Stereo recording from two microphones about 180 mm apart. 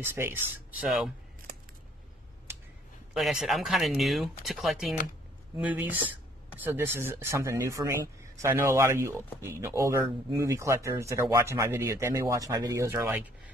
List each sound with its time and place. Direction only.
0.1 s speech: 10° right (ahead or behind)
3.2 s speech: centre (ahead or behind)